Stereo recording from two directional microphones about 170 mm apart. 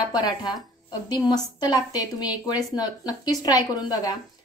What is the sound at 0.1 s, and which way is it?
A woman's voice, 25° left (ahead or behind).